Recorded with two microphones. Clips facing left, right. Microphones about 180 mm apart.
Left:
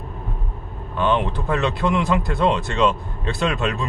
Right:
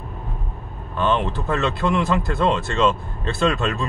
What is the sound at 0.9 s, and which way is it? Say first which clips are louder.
Speech: left 1 dB; 15° left (ahead or behind).